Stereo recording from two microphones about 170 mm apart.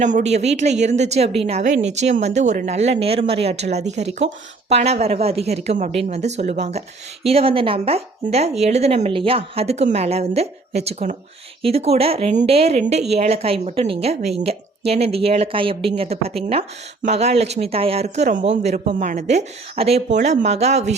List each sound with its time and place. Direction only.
0.0 s a woman's voice: 45° right (ahead or behind)